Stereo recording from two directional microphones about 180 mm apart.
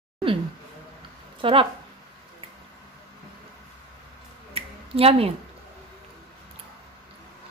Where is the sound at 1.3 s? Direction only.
30° right (ahead or behind).